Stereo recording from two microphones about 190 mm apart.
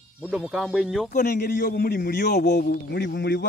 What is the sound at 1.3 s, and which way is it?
A man's voice, 50° left (ahead or behind).